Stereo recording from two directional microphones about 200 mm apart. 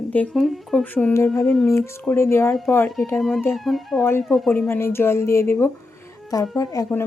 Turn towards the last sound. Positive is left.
turn(degrees=15)  # may be behind; listen again after turning